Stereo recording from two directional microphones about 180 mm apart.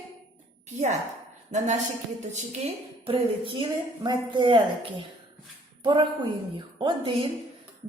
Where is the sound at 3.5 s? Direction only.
25° right (ahead or behind).